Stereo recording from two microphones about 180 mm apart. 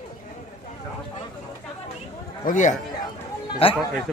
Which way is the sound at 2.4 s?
45° left (ahead or behind).